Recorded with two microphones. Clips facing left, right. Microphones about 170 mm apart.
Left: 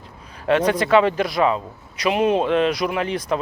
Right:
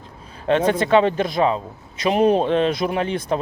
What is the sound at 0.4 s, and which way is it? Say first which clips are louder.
Speech: even; 30° right (ahead or behind).